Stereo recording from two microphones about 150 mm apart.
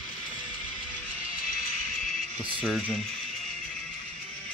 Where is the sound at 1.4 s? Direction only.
70° left (ahead or behind).